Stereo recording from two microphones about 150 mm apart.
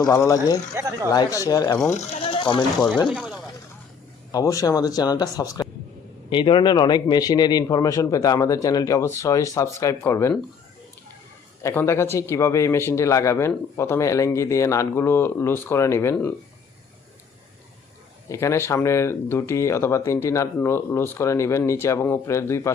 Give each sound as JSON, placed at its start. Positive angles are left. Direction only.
{"t": 0.0, "sound": "speech", "side_deg": 25}
{"t": 2.2, "sound": "a sound", "side_deg": 30}
{"t": 3.1, "sound": "speech", "side_deg": -5}
{"t": 4.3, "sound": "speech", "side_deg": 25}
{"t": 11.6, "sound": "speech", "side_deg": 15}
{"t": 18.3, "sound": "speech", "side_deg": 20}